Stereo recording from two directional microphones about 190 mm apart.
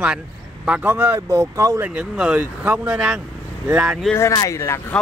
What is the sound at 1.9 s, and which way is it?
Speech, 5° right (ahead or behind).